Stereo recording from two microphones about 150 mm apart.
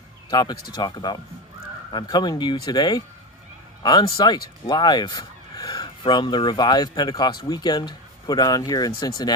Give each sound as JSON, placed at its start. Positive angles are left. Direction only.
{"t": 0.3, "sound": "speech", "side_deg": 25}